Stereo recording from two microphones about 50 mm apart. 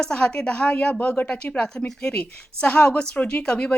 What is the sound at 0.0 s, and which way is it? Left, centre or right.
Speech, centre.